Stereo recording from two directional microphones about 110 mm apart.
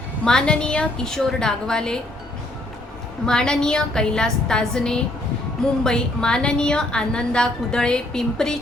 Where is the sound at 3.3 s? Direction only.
5° left (ahead or behind).